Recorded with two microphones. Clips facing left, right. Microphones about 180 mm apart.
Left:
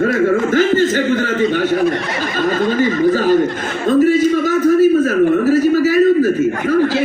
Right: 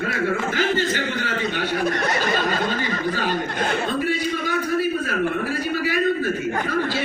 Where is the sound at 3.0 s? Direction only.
40° left (ahead or behind).